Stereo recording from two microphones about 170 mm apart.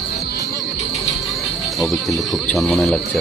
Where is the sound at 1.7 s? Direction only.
Centre (ahead or behind).